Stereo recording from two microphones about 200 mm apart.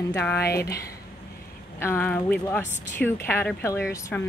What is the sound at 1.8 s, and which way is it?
Speech, 10° left (ahead or behind).